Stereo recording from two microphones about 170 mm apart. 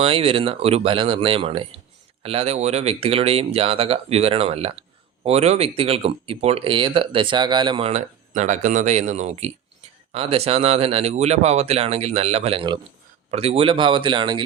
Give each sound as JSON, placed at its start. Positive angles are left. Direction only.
{"t": 0.0, "sound": "speech", "side_deg": -35}